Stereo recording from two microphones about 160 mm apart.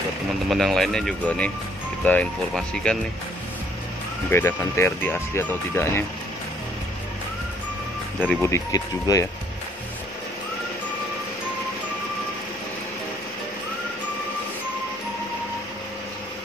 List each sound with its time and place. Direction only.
0.5 s speech: centre (ahead or behind)
4.3 s speech: 15° left (ahead or behind)
8.3 s speech: 15° left (ahead or behind)